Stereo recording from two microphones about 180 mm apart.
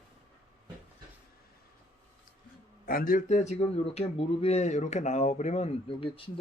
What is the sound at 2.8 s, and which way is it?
Speech, 50° left (ahead or behind).